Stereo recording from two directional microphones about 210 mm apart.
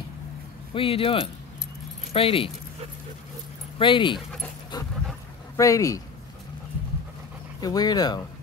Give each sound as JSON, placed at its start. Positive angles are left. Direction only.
{"t": 0.7, "sound": "speech", "side_deg": 25}
{"t": 3.7, "sound": "speech", "side_deg": 25}
{"t": 4.7, "sound": "dog", "side_deg": 20}
{"t": 5.6, "sound": "speech", "side_deg": 15}
{"t": 7.6, "sound": "speech", "side_deg": 20}